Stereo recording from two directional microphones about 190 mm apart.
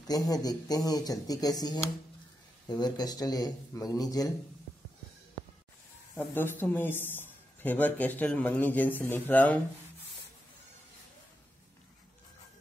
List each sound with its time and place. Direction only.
0.0 s speech: 20° left (ahead or behind)
6.1 s speech: 10° left (ahead or behind)